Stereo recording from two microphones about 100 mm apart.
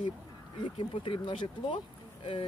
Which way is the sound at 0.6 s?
55° left (ahead or behind).